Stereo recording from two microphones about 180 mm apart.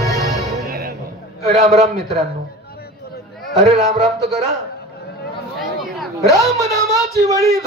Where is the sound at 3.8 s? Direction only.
35° right (ahead or behind).